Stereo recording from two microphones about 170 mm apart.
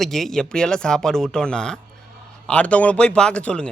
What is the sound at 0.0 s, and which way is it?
Speech, centre (ahead or behind).